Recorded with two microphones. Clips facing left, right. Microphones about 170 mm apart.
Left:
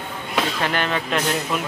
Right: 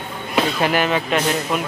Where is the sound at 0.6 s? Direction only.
5° right (ahead or behind).